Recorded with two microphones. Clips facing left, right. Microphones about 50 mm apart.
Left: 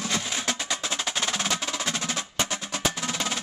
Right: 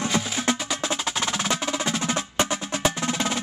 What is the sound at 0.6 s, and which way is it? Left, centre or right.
Percussion, centre.